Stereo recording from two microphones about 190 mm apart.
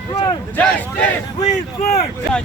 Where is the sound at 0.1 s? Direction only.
20° left (ahead or behind).